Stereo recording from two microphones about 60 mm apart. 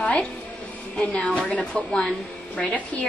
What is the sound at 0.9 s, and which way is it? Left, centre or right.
A woman's voice, left.